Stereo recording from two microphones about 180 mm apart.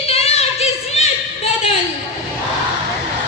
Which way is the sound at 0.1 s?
35° left (ahead or behind).